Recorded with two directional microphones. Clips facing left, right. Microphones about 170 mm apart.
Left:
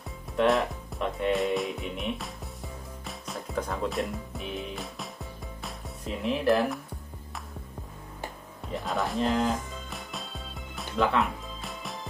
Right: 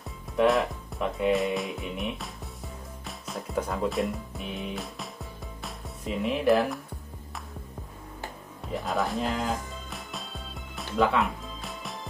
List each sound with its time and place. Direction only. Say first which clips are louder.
0.4 s speech: right 1 dB; centre (ahead or behind)
8.7 s speech: right 1 dB; centre (ahead or behind)
9.8 s music: even; centre (ahead or behind)